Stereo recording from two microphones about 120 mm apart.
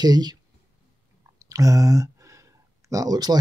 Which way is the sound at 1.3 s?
30° right (ahead or behind).